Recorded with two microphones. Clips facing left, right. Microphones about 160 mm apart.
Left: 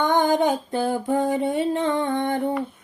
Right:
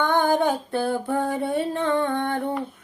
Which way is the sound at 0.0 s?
15° left (ahead or behind).